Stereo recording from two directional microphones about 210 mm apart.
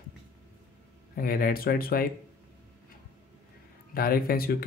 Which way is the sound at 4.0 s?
45° left (ahead or behind).